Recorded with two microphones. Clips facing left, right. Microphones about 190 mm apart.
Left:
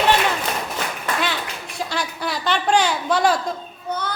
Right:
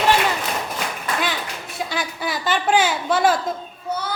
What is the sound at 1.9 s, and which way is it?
Speech, centre (ahead or behind).